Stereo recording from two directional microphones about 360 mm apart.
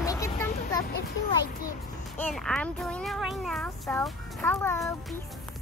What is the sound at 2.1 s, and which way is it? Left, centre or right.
A child's voice, centre.